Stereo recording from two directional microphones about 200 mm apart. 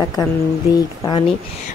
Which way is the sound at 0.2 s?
15° left (ahead or behind).